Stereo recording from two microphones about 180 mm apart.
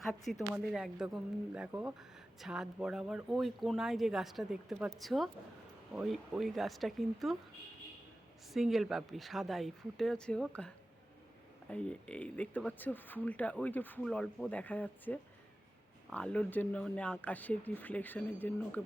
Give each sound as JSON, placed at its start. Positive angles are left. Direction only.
{"t": 0.0, "sound": "speech", "side_deg": 0}
{"t": 8.5, "sound": "speech", "side_deg": 0}
{"t": 11.7, "sound": "speech", "side_deg": 5}